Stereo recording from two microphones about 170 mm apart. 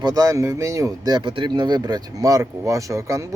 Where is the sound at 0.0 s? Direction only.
20° right (ahead or behind).